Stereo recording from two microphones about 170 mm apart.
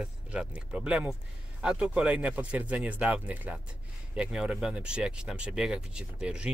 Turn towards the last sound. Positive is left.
turn(degrees=-5)  # may be behind; listen again after turning